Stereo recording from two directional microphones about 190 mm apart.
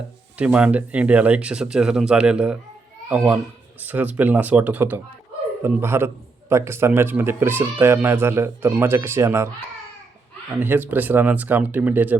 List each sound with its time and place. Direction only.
0.3 s speech: 5° right (ahead or behind)
10.6 s speech: 10° right (ahead or behind)